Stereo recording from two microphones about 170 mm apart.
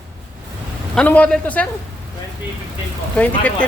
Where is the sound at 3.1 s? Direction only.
5° left (ahead or behind).